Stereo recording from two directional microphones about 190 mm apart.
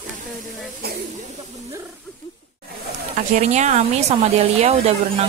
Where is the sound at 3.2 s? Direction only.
40° right (ahead or behind).